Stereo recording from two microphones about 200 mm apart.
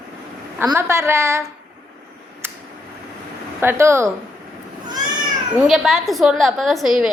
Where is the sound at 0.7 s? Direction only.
15° right (ahead or behind).